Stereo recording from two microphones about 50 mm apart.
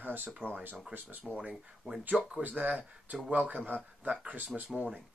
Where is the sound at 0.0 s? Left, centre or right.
Right.